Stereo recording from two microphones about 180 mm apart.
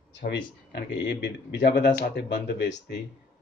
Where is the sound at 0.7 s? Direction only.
75° left (ahead or behind).